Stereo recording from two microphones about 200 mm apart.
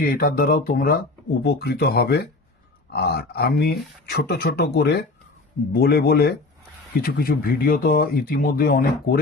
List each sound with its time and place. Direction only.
0.0 s speech: 50° left (ahead or behind)